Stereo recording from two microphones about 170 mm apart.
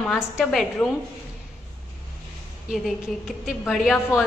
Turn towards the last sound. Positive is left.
turn(degrees=0)  # may be behind; listen again after turning